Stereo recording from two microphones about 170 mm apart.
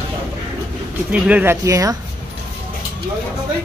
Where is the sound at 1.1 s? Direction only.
10° right (ahead or behind).